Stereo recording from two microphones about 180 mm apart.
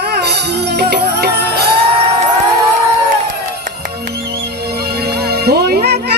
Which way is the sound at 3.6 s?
55° right (ahead or behind).